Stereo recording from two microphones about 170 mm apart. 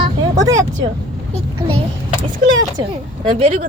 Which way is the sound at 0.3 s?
20° right (ahead or behind).